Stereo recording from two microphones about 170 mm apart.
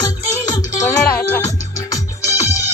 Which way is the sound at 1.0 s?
10° left (ahead or behind).